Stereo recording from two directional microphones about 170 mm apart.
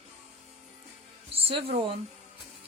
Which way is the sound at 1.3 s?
35° right (ahead or behind).